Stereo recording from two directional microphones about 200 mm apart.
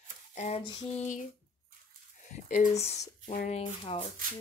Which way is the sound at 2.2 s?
40° left (ahead or behind).